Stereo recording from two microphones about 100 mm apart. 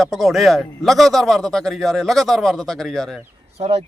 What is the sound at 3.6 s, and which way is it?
Speech, 90° right.